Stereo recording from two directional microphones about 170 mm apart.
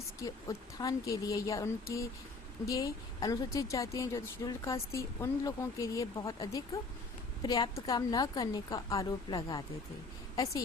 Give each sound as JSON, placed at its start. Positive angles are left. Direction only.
{"t": 0.2, "sound": "a woman's voice", "side_deg": 20}